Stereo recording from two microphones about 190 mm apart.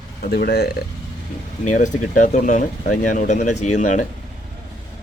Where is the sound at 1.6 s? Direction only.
40° left (ahead or behind).